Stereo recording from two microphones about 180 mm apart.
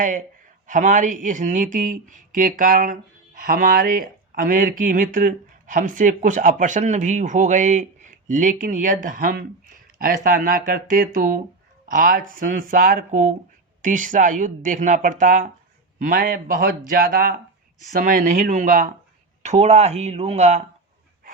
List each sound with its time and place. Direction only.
0.7 s speech: 45° right (ahead or behind)